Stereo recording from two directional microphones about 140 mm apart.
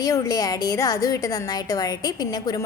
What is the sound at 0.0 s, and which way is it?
A woman's voice, 25° left (ahead or behind).